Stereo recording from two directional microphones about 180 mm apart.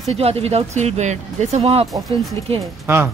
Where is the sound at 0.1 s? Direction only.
35° right (ahead or behind).